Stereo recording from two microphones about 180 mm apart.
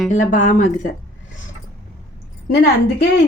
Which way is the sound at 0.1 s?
45° left (ahead or behind).